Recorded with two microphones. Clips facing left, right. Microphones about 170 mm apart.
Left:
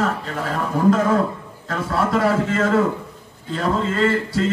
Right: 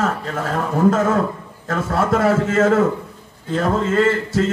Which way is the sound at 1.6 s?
50° right (ahead or behind).